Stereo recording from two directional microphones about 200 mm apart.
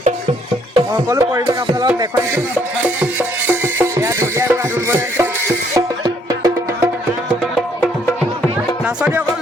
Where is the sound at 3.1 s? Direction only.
10° right (ahead or behind).